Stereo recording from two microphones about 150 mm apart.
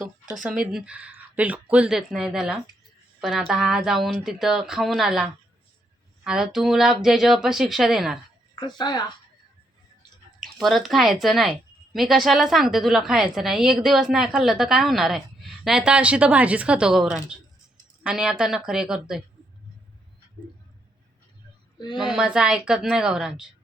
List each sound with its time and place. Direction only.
0.7 s a woman's voice: 5° right (ahead or behind)
8.5 s speech: 30° left (ahead or behind)
10.4 s a woman's voice: centre (ahead or behind)
21.8 s speech: 30° left (ahead or behind)
22.1 s a woman's voice: 5° right (ahead or behind)